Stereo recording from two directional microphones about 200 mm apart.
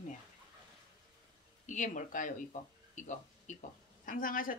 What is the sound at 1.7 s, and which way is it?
Speech, 40° left (ahead or behind).